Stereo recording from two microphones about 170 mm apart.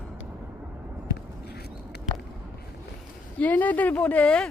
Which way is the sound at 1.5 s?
70° left (ahead or behind).